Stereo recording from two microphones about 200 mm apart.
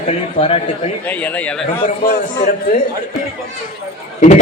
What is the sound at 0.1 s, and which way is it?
Speech, 30° left (ahead or behind).